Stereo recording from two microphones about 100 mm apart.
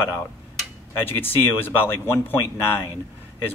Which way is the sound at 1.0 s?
20° left (ahead or behind).